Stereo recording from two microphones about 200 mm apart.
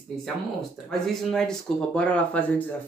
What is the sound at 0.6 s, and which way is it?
Speech, centre (ahead or behind).